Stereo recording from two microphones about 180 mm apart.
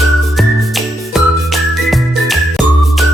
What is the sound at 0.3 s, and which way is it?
Music, centre (ahead or behind).